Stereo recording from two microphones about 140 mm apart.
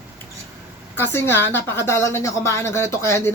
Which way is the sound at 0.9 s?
15° left (ahead or behind).